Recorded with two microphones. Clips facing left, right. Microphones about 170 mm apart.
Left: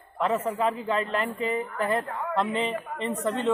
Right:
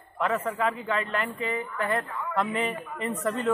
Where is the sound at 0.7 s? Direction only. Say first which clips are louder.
Left 2 dB; 30° left (ahead or behind).